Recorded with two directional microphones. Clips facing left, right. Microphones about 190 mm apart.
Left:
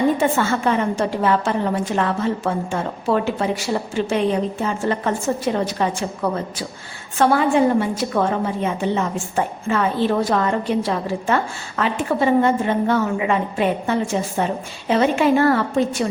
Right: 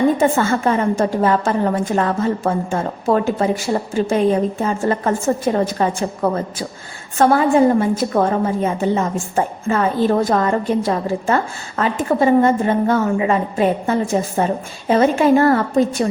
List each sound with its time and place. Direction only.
0.2 s a woman's voice: 45° right (ahead or behind)